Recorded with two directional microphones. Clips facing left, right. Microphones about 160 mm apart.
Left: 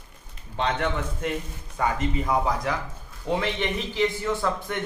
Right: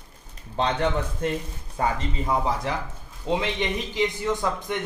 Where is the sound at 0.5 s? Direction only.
35° right (ahead or behind).